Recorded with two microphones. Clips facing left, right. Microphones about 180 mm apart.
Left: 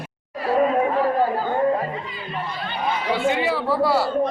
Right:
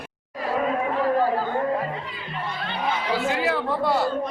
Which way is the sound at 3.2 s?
Centre (ahead or behind).